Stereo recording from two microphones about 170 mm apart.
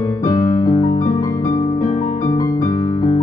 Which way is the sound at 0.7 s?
40° left (ahead or behind).